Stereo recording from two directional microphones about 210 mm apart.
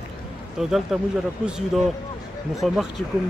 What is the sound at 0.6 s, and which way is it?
Speech, centre (ahead or behind).